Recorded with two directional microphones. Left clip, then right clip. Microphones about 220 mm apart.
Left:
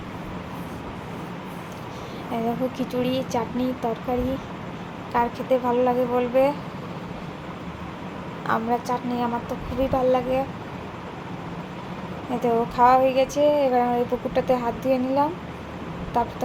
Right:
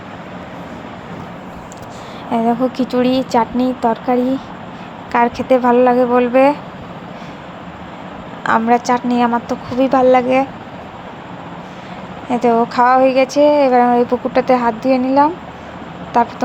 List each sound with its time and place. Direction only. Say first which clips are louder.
2.3 s speech: right 10 dB; 25° right (ahead or behind)
8.4 s speech: right 11 dB; 30° right (ahead or behind)
12.4 s speech: right 7 dB; 20° right (ahead or behind)